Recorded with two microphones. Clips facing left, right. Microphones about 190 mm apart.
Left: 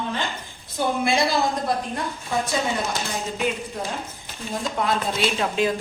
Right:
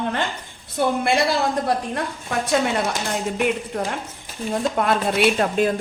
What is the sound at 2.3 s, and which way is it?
Speech, 70° right (ahead or behind).